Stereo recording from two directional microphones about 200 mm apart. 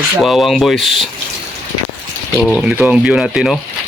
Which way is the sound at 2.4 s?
Centre (ahead or behind).